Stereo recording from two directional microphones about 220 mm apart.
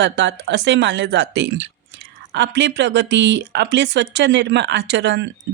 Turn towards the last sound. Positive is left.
turn(degrees=-55)  # may be behind; listen again after turning